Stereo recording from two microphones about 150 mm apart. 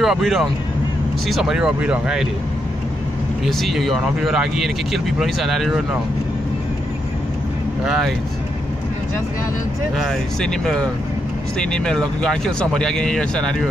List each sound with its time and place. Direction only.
0.0 s speech: centre (ahead or behind)
3.4 s speech: centre (ahead or behind)
7.8 s speech: 5° right (ahead or behind)
9.9 s speech: centre (ahead or behind)